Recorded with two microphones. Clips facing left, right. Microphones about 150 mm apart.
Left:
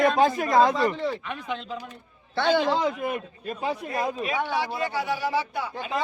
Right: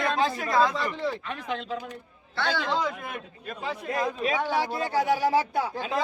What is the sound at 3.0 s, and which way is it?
A man's voice, 10° left (ahead or behind).